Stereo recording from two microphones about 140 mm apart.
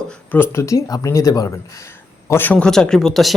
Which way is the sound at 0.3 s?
15° left (ahead or behind).